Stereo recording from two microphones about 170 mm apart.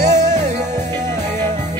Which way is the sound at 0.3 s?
45° right (ahead or behind).